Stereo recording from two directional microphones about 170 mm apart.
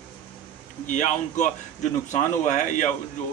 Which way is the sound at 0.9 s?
45° left (ahead or behind).